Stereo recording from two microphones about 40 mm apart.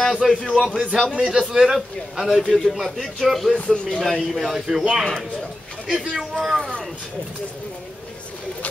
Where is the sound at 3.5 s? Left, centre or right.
Left.